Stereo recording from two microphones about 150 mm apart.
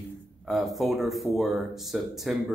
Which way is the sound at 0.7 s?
Centre (ahead or behind).